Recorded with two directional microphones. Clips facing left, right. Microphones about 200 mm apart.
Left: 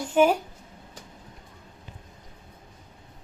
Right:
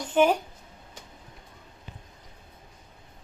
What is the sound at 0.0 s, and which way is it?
Speech, 5° left (ahead or behind).